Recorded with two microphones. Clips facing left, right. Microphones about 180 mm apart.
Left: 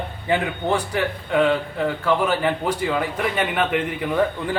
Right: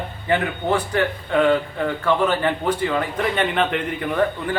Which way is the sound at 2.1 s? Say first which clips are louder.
Right 1 dB; 10° left (ahead or behind).